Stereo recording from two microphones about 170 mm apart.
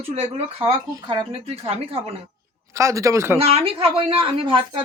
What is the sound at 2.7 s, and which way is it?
Speech, 15° right (ahead or behind).